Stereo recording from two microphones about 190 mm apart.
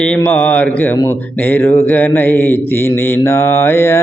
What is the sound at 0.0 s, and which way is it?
Mantra, 5° left (ahead or behind).